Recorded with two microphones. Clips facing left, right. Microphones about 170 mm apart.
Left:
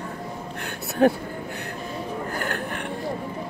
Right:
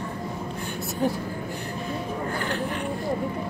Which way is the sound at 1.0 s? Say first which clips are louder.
Left 7 dB; 75° left (ahead or behind).